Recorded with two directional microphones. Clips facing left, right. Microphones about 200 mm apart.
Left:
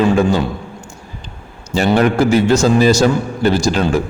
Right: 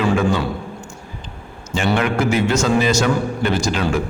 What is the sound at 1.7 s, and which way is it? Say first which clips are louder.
A man's voice: left 6 dB; 40° left (ahead or behind).